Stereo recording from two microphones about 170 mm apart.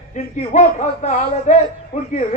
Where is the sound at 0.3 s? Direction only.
45° left (ahead or behind).